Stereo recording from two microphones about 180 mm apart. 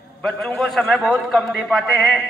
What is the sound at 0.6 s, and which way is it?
A man's voice, 5° left (ahead or behind).